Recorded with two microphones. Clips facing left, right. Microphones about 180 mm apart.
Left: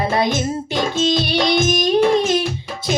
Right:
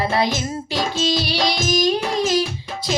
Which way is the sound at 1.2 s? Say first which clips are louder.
Left 5 dB; 55° left (ahead or behind).